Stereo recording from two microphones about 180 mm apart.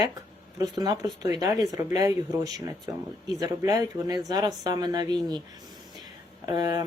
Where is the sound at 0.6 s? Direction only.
20° right (ahead or behind).